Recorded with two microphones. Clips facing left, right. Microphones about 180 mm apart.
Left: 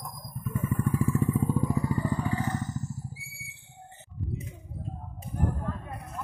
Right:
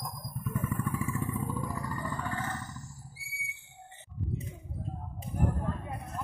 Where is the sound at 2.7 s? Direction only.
20° left (ahead or behind).